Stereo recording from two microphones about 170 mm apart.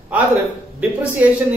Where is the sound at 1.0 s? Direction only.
10° right (ahead or behind).